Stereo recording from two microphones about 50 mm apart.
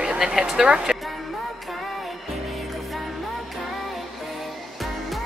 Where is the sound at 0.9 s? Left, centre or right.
Centre.